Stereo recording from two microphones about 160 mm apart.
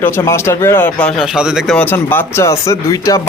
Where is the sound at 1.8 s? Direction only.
10° left (ahead or behind).